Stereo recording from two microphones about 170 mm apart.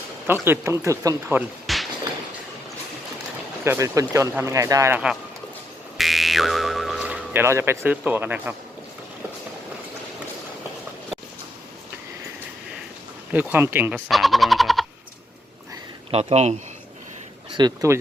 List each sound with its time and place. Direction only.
0.3 s speech: 10° right (ahead or behind)
1.6 s a sound: centre (ahead or behind)
3.6 s speech: 15° right (ahead or behind)
6.0 s music: centre (ahead or behind)
13.3 s speech: 10° right (ahead or behind)
14.1 s a sound: centre (ahead or behind)
16.1 s speech: 40° right (ahead or behind)
17.5 s speech: 25° right (ahead or behind)